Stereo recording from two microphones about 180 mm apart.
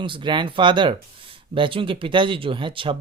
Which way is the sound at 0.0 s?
25° right (ahead or behind).